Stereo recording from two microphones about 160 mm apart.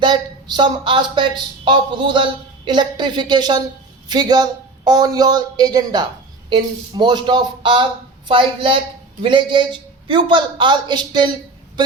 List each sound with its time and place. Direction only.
0.0 s a woman's voice: 25° right (ahead or behind)